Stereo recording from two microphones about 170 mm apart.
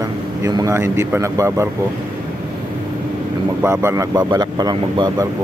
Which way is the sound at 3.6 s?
15° right (ahead or behind).